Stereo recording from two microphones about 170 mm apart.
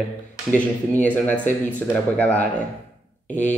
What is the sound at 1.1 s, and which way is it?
Speech, 10° left (ahead or behind).